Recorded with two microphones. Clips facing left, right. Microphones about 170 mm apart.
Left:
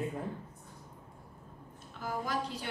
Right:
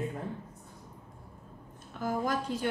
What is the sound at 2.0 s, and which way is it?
Speech, 50° right (ahead or behind).